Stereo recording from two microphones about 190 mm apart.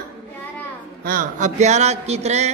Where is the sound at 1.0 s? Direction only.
45° right (ahead or behind).